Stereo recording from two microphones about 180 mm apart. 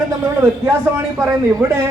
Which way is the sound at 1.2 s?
15° right (ahead or behind).